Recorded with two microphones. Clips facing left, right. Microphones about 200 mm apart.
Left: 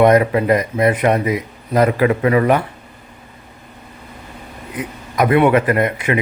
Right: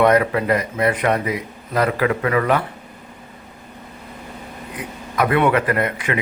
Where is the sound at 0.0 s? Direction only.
20° left (ahead or behind).